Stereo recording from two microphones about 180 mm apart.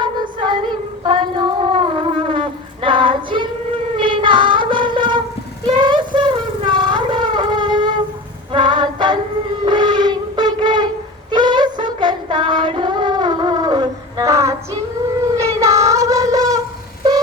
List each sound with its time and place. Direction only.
0.0 s music: 25° right (ahead or behind)
1.0 s a sound: 25° right (ahead or behind)
8.5 s music: 25° right (ahead or behind)
9.6 s a sound: 25° right (ahead or behind)
11.3 s music: 25° right (ahead or behind)
15.4 s child singing: 15° right (ahead or behind)